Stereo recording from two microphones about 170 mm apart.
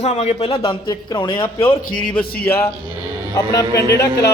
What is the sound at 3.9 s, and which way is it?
Speech, 80° left.